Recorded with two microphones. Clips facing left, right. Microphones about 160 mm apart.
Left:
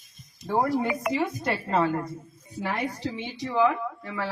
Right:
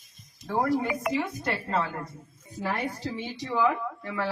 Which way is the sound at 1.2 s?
15° left (ahead or behind).